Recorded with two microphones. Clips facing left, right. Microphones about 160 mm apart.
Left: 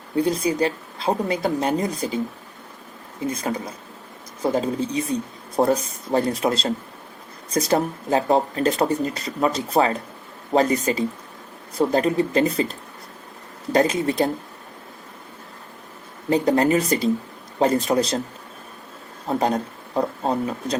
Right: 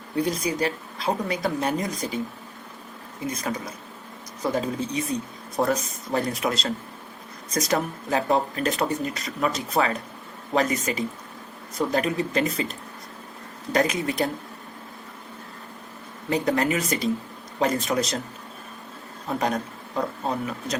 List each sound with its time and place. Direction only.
0.2 s speech: 30° left (ahead or behind)
3.2 s speech: 30° left (ahead or behind)
13.7 s speech: 30° left (ahead or behind)
16.3 s speech: 30° left (ahead or behind)
19.3 s speech: 30° left (ahead or behind)